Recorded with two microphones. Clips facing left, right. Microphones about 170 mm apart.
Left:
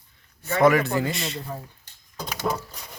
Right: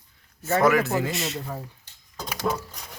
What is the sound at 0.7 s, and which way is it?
Speech, centre (ahead or behind).